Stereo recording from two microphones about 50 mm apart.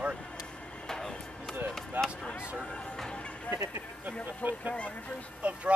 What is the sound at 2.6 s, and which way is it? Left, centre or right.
Music, left.